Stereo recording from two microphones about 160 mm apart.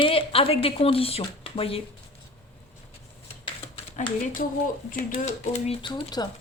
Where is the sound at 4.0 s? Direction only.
50° left (ahead or behind).